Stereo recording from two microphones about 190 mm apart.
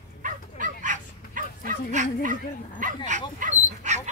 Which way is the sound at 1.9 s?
40° right (ahead or behind).